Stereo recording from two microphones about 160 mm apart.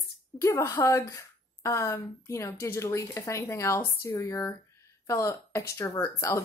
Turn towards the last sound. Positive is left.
turn(degrees=15)  # may be behind; listen again after turning